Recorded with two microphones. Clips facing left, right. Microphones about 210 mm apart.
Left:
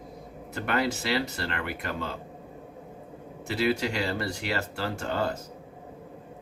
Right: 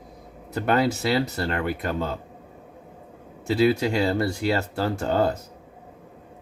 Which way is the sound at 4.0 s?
40° right (ahead or behind).